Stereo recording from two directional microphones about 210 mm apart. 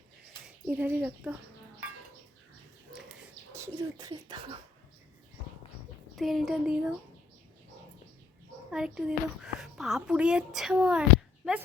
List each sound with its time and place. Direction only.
0.4 s a child's voice: 5° right (ahead or behind)
3.5 s speech: 15° right (ahead or behind)
6.1 s speech: centre (ahead or behind)
8.7 s speech: 5° right (ahead or behind)